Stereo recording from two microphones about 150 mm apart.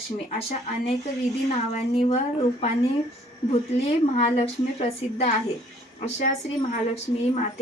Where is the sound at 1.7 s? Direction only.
45° left (ahead or behind).